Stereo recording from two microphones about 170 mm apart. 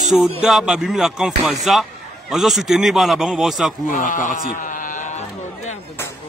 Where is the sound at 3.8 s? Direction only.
50° left (ahead or behind).